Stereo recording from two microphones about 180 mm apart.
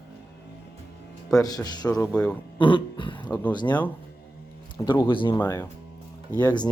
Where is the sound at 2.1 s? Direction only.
5° left (ahead or behind).